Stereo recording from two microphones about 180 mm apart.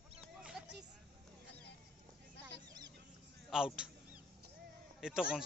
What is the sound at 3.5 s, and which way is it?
Speech, 5° right (ahead or behind).